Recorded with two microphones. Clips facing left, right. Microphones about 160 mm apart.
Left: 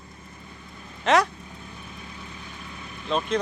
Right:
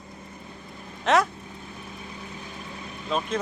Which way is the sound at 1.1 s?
Centre (ahead or behind).